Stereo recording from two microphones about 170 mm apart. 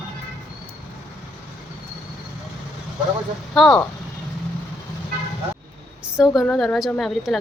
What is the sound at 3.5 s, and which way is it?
Speech, centre (ahead or behind).